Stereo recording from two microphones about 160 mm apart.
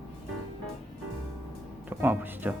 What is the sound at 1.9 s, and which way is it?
Speech, 10° right (ahead or behind).